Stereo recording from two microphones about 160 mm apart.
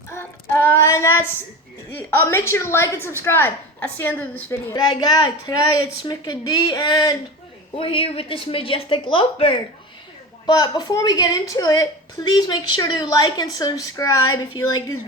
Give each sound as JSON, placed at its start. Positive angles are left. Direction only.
{"t": 0.1, "sound": "child singing", "side_deg": 15}
{"t": 2.2, "sound": "a woman's voice", "side_deg": 15}
{"t": 4.7, "sound": "a woman's voice", "side_deg": 25}